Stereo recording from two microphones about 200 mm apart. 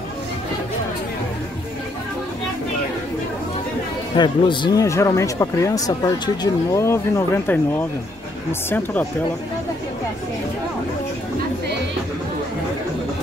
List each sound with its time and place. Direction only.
4.2 s speech: 20° left (ahead or behind)